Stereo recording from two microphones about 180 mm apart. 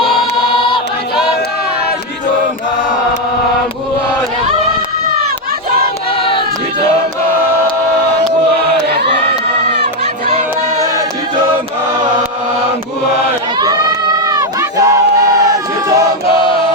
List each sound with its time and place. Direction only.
14.2 s crowd: 20° right (ahead or behind)